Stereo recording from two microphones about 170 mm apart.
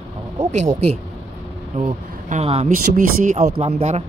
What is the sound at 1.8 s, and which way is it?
Speech, 40° right (ahead or behind).